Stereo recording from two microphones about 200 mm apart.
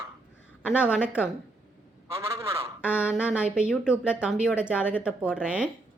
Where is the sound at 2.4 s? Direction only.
5° right (ahead or behind).